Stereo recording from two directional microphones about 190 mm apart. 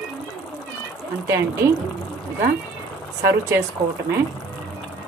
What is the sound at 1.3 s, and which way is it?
Speech, 15° right (ahead or behind).